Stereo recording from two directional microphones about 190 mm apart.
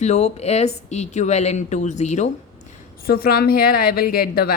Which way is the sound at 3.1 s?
55° left (ahead or behind).